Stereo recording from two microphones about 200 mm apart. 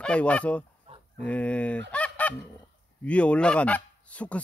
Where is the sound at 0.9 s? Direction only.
30° right (ahead or behind).